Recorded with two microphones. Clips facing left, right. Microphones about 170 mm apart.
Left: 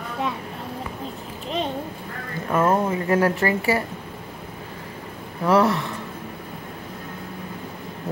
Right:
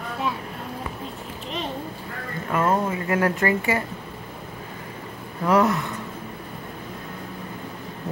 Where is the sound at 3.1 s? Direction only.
30° left (ahead or behind).